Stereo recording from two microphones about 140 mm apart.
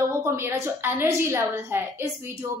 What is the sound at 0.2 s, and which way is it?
A woman's voice, 20° right (ahead or behind).